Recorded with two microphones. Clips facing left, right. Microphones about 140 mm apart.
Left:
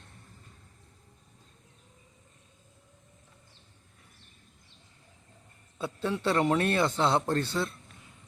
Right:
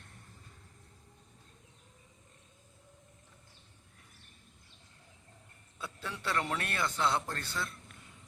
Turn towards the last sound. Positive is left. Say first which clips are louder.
# left 10 dB
turn(degrees=25)  # may be behind; listen again after turning